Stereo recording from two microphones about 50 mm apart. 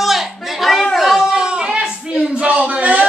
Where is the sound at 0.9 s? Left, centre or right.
Centre.